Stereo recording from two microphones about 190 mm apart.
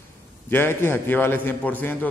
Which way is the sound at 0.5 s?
10° left (ahead or behind).